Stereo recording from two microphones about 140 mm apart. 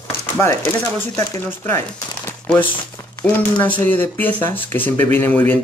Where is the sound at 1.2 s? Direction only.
15° left (ahead or behind).